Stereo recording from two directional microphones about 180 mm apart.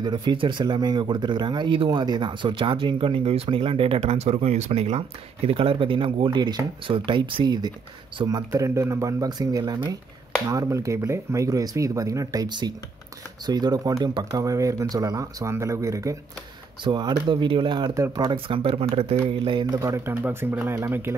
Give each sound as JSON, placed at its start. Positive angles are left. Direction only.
{"t": 0.0, "sound": "speech", "side_deg": -25}